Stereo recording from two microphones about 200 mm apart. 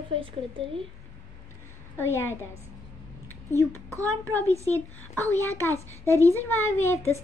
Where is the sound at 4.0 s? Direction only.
10° left (ahead or behind).